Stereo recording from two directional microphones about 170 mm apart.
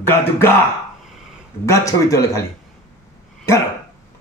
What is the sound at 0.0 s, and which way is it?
Speech, 15° left (ahead or behind).